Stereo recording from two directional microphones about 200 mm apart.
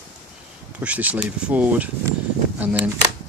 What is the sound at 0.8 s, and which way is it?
Speech, 5° right (ahead or behind).